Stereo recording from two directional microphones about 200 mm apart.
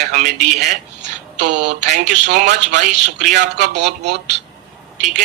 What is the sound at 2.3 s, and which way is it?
A man's voice, 40° right (ahead or behind).